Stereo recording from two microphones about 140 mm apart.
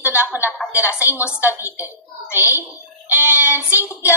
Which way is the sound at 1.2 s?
15° left (ahead or behind).